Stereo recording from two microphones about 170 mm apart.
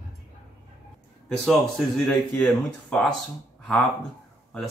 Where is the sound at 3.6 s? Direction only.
5° left (ahead or behind).